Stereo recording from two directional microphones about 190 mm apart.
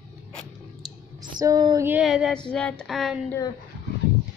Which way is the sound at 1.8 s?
5° right (ahead or behind).